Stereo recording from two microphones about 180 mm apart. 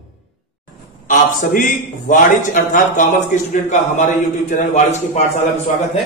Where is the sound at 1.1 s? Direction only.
45° left (ahead or behind).